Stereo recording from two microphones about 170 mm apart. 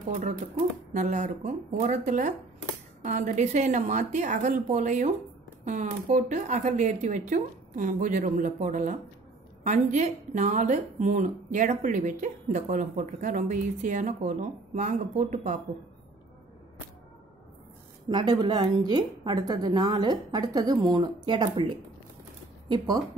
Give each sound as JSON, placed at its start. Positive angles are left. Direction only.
{"t": 0.9, "sound": "a woman's voice", "side_deg": -45}
{"t": 18.0, "sound": "speech", "side_deg": -25}